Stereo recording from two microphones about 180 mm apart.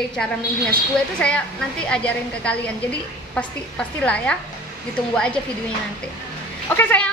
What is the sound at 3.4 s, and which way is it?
A woman's voice, 5° left (ahead or behind).